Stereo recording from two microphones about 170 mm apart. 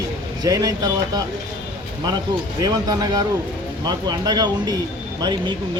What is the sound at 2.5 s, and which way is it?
Speech, 25° right (ahead or behind).